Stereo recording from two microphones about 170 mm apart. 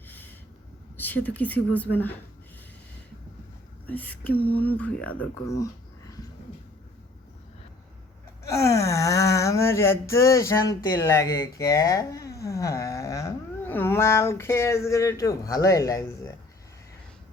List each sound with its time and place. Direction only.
0.9 s speech: 10° left (ahead or behind)
3.8 s speech: 10° left (ahead or behind)
8.4 s speech: 20° left (ahead or behind)